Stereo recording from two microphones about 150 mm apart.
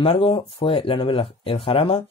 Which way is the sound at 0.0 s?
40° left (ahead or behind).